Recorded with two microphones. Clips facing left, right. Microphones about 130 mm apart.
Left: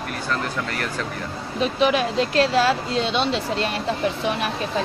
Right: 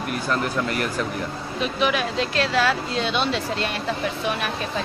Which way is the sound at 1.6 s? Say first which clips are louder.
Left 3 dB; 30° left (ahead or behind).